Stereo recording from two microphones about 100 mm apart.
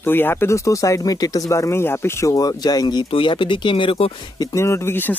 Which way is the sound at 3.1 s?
55° left (ahead or behind).